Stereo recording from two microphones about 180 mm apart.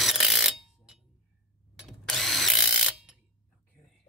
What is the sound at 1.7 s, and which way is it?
Mechanisms, centre (ahead or behind).